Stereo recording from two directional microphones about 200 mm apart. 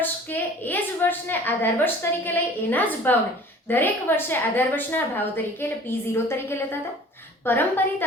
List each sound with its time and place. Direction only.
0.0 s a woman's voice: 10° left (ahead or behind)